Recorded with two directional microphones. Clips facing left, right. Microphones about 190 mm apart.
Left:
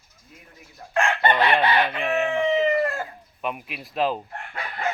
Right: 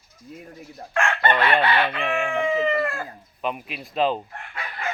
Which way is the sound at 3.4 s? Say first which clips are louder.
Right 2 dB; centre (ahead or behind).